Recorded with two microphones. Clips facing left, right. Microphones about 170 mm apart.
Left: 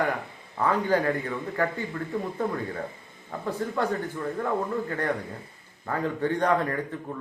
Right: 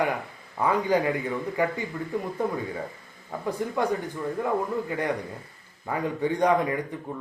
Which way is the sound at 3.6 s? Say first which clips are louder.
Even; 15° right (ahead or behind).